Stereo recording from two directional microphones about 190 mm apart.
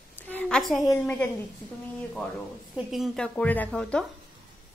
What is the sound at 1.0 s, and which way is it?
Speech, 10° left (ahead or behind).